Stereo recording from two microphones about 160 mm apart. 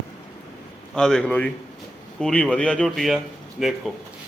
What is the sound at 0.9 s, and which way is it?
A man's voice, 5° left (ahead or behind).